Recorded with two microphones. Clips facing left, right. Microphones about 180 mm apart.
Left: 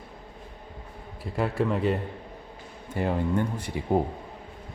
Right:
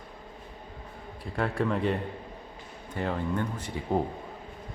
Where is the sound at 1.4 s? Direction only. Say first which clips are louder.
Left 2 dB; 5° left (ahead or behind).